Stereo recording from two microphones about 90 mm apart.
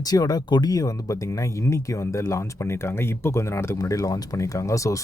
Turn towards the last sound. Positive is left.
turn(degrees=35)  # may be behind; listen again after turning